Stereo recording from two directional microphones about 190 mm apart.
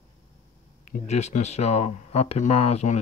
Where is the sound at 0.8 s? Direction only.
40° left (ahead or behind).